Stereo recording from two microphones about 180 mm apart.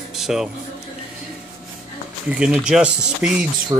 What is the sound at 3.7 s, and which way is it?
Speech, 20° right (ahead or behind).